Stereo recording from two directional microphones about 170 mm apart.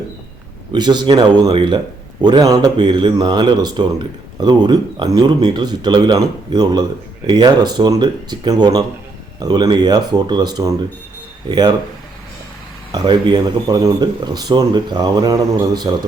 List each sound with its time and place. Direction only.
0.7 s speech: 25° right (ahead or behind)
12.9 s speech: 25° right (ahead or behind)